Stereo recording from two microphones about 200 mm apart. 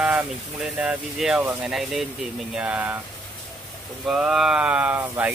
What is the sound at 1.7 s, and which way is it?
Speech, centre (ahead or behind).